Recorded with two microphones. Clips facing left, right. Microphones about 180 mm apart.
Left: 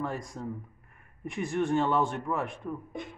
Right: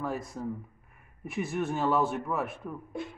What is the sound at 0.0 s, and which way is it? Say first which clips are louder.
Speech: right 1 dB; 5° right (ahead or behind).